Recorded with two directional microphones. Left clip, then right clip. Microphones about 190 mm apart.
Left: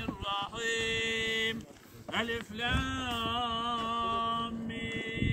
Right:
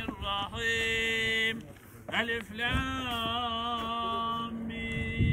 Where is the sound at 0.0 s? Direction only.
30° right (ahead or behind).